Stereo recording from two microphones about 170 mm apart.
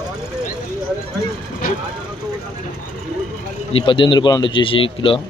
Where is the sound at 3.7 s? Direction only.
30° left (ahead or behind).